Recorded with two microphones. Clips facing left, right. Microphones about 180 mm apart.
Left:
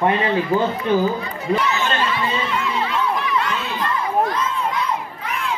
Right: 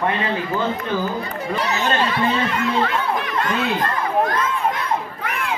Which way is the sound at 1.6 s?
40° right (ahead or behind).